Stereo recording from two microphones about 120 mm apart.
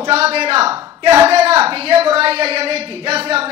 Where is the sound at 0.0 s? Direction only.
60° right (ahead or behind).